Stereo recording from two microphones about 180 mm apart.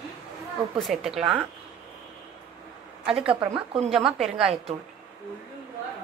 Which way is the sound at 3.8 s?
Centre (ahead or behind).